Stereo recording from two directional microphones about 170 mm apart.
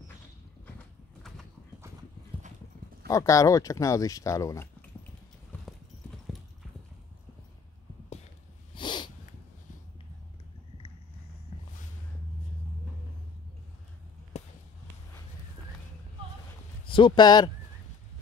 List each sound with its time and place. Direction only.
3.1 s speech: 20° left (ahead or behind)
8.7 s snort: 30° left (ahead or behind)
14.3 s basketball bounce: 40° left (ahead or behind)
16.8 s speech: 30° left (ahead or behind)